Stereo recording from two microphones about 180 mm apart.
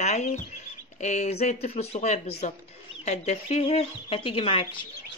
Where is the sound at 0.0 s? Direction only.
40° left (ahead or behind).